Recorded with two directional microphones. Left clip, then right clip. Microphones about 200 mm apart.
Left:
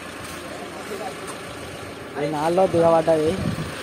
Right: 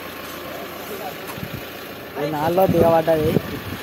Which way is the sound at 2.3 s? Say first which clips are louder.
Right 2 dB; 10° right (ahead or behind).